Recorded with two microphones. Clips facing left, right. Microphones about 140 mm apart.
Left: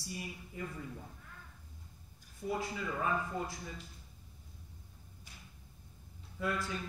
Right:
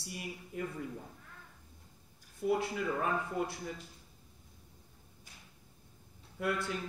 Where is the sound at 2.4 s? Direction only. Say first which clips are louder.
Right 5 dB; 65° right (ahead or behind).